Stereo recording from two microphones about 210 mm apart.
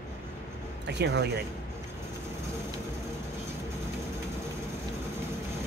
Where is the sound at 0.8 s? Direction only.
55° right (ahead or behind).